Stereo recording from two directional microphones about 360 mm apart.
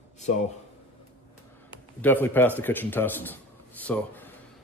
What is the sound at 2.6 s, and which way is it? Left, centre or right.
Speech, centre.